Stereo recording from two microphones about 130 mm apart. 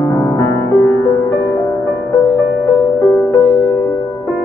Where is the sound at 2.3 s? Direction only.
30° left (ahead or behind).